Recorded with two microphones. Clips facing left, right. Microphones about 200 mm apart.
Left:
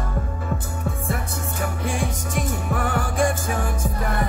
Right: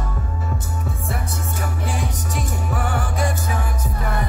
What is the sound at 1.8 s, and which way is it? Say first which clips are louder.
Music: left 1 dB; 50° left (ahead or behind).